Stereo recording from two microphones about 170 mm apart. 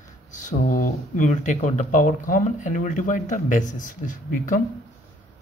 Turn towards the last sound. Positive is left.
turn(degrees=55)  # may be behind; listen again after turning